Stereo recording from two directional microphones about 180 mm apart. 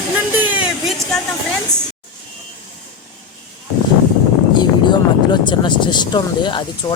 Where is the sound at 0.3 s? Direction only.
10° right (ahead or behind).